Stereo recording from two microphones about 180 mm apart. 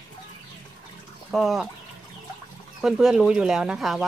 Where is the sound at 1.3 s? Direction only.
Centre (ahead or behind).